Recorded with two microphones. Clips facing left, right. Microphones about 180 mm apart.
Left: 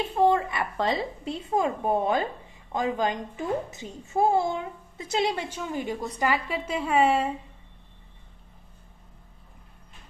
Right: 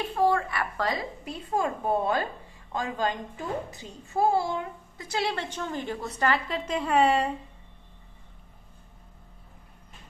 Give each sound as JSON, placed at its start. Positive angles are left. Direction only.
{"t": 0.0, "sound": "a woman's voice", "side_deg": 20}